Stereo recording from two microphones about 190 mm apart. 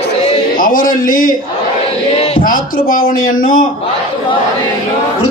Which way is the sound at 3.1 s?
90° left.